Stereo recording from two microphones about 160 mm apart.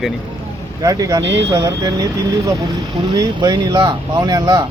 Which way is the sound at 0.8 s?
20° right (ahead or behind).